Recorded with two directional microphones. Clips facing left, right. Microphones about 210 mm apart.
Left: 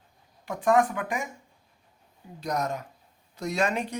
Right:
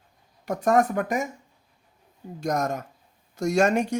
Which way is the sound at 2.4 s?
45° right (ahead or behind).